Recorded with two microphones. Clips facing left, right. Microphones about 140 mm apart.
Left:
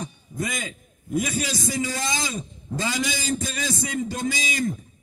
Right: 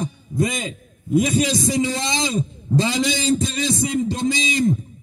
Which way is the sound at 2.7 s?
25° right (ahead or behind).